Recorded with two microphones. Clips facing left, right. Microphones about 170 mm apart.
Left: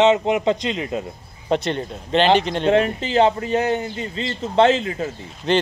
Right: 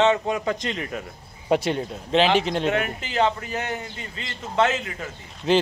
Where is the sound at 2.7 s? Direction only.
30° left (ahead or behind).